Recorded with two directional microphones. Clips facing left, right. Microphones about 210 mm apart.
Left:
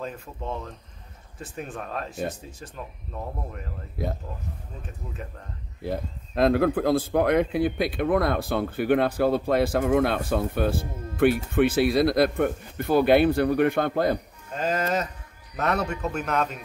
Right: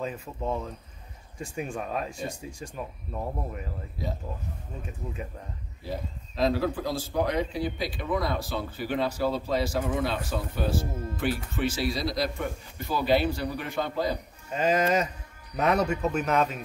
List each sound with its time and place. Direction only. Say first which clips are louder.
0.0 s speech: right 2 dB; 5° right (ahead or behind)
4.0 s speech: left 4 dB; 55° left (ahead or behind)
5.8 s speech: left 5 dB; 55° left (ahead or behind)
14.5 s speech: right 2 dB; 10° right (ahead or behind)